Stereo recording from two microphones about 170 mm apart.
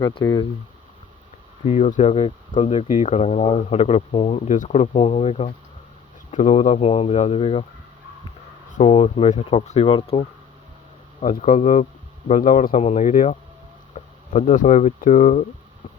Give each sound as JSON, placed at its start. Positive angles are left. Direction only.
{"t": 0.0, "sound": "speech", "side_deg": 25}
{"t": 1.6, "sound": "speech", "side_deg": 40}
{"t": 8.7, "sound": "speech", "side_deg": 35}
{"t": 11.2, "sound": "speech", "side_deg": 45}